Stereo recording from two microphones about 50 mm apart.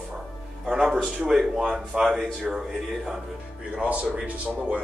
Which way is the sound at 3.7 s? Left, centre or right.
Right.